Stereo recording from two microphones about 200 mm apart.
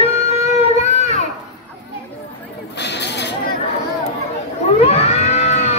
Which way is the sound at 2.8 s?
60° left (ahead or behind).